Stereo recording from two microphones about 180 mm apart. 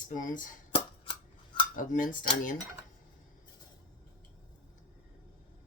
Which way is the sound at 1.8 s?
45° left (ahead or behind).